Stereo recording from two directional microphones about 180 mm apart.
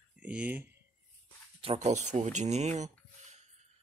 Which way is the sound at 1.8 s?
40° right (ahead or behind).